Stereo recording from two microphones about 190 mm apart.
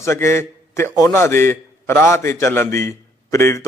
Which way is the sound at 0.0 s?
15° left (ahead or behind).